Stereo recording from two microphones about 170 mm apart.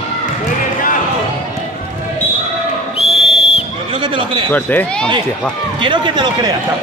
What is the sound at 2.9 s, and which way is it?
Whistle, 35° left (ahead or behind).